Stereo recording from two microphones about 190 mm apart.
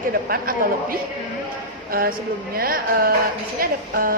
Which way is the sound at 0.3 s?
50° right (ahead or behind).